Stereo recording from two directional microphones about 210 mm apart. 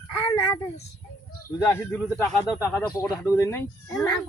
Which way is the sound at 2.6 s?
15° left (ahead or behind).